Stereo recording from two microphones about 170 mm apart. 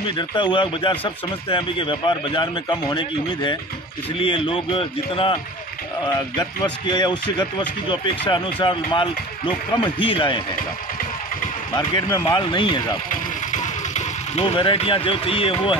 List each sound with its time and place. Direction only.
0.2 s a man's voice: 30° left (ahead or behind)
11.7 s speech: 25° left (ahead or behind)
13.5 s a sound: 45° left (ahead or behind)
14.4 s a man's voice: 30° left (ahead or behind)